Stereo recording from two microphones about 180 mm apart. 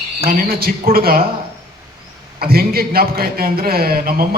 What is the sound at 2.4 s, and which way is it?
A man's voice, 55° right (ahead or behind).